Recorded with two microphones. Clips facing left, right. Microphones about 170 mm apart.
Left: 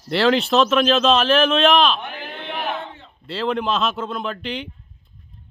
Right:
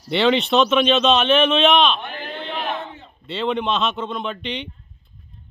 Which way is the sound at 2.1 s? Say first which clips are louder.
Right 2 dB; 10° left (ahead or behind).